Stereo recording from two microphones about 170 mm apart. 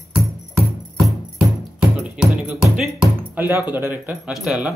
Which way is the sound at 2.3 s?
5° right (ahead or behind).